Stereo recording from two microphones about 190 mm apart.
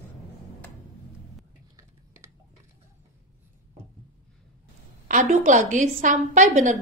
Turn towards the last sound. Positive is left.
turn(degrees=-40)  # may be behind; listen again after turning